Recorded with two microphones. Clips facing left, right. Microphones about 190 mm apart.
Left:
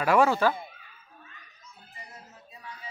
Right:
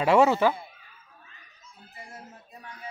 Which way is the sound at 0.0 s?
25° right (ahead or behind).